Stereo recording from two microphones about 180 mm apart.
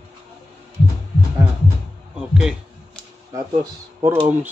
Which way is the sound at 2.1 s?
5° right (ahead or behind).